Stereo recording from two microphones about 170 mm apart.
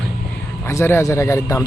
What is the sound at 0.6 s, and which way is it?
Speech, 15° left (ahead or behind).